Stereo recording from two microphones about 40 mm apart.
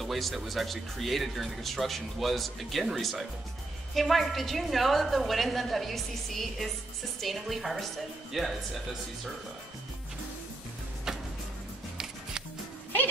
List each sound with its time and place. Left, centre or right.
0.0 s speech: centre
11.1 s music: centre